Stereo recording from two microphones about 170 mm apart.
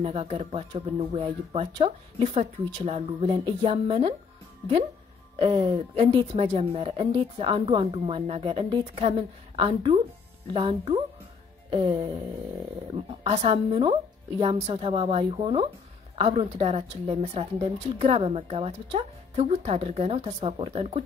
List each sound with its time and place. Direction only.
0.0 s speech: 35° right (ahead or behind)
5.4 s speech: 35° right (ahead or behind)
12.9 s speech: 40° right (ahead or behind)